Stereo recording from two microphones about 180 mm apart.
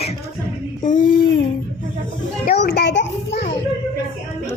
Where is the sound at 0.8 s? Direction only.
45° left (ahead or behind).